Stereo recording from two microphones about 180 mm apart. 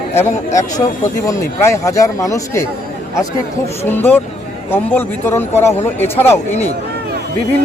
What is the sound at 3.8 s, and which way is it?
Speech, 10° left (ahead or behind).